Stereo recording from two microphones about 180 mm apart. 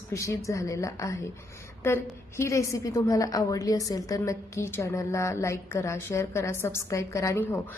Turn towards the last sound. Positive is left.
turn(degrees=15)  # may be behind; listen again after turning